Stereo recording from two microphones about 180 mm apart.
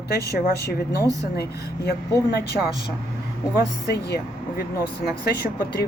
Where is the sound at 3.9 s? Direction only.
65° left (ahead or behind).